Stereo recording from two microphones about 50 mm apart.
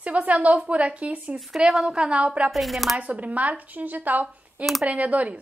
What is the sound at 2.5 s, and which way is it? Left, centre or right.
Speech, centre.